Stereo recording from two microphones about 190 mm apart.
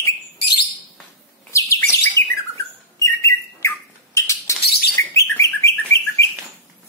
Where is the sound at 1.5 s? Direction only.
15° left (ahead or behind).